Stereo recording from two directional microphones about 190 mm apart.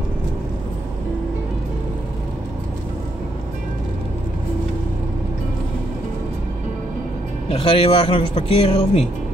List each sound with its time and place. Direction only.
7.4 s a man's voice: 30° left (ahead or behind)